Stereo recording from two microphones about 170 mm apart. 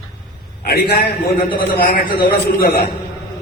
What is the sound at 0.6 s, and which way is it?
A man's voice, 60° left (ahead or behind).